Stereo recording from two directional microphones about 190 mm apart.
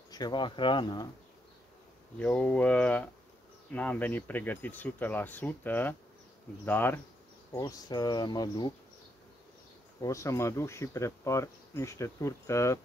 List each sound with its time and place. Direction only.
0.1 s speech: 20° left (ahead or behind)
2.1 s speech: 5° left (ahead or behind)
9.9 s speech: 15° left (ahead or behind)